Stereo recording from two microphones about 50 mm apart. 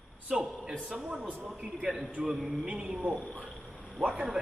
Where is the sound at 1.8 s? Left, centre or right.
Centre.